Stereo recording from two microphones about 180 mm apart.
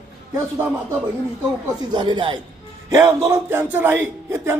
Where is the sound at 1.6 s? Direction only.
25° right (ahead or behind).